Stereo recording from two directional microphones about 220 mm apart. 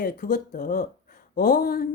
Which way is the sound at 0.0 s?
40° left (ahead or behind).